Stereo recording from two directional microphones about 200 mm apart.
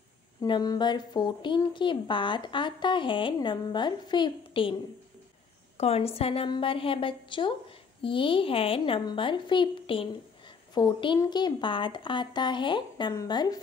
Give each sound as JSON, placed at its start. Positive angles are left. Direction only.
{"t": 0.4, "sound": "a woman's voice", "side_deg": 20}
{"t": 5.8, "sound": "a woman's voice", "side_deg": 30}